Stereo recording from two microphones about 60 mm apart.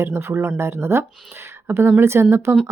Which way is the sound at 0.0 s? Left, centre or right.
Right.